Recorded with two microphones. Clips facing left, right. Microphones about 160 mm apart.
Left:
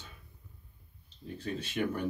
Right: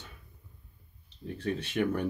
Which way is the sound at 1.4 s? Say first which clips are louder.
Right 5 dB; 70° right (ahead or behind).